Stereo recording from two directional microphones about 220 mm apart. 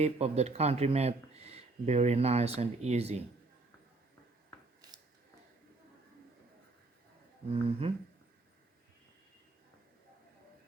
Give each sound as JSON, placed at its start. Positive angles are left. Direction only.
{"t": 0.0, "sound": "speech", "side_deg": -30}
{"t": 7.5, "sound": "speech", "side_deg": -25}